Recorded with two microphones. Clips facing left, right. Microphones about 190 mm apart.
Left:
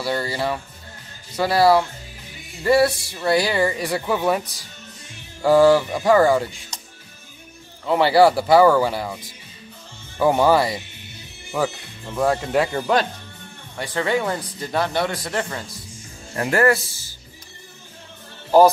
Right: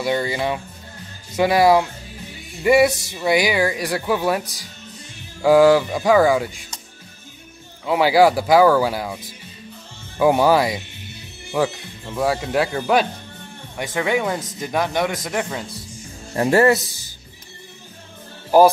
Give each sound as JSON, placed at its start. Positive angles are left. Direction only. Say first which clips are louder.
{"t": 0.0, "sound": "speech", "louder": "right 2 dB", "side_deg": -20}
{"t": 7.8, "sound": "speech", "louder": "even", "side_deg": -10}
{"t": 13.7, "sound": "speech", "louder": "right 1 dB", "side_deg": -15}
{"t": 16.3, "sound": "speech", "louder": "right 3 dB", "side_deg": -25}